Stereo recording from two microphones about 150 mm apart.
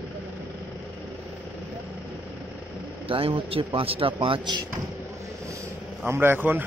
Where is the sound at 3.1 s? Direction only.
40° right (ahead or behind).